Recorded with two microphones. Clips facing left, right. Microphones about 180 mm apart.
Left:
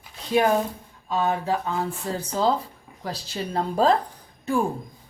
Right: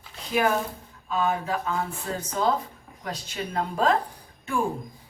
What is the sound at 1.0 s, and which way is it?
A woman's voice, 30° left (ahead or behind).